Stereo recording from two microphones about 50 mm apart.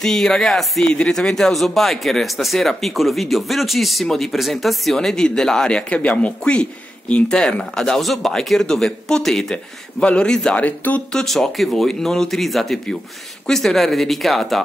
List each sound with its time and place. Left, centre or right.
0.0 s speech: centre
0.8 s speech: centre
4.9 s speech: centre
7.7 s speech: centre
10.6 s speech: left
11.2 s speech: centre